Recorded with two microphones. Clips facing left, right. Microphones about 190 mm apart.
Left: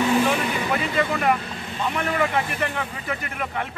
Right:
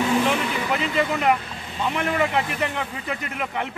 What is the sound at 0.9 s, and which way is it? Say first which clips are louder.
A man's voice: right 1 dB; 20° right (ahead or behind).